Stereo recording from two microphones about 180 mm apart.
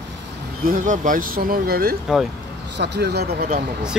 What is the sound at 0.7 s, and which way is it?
Speech, 45° right (ahead or behind).